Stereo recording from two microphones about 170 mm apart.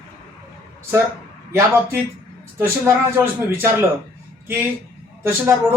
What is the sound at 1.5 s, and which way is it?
Speech, 15° right (ahead or behind).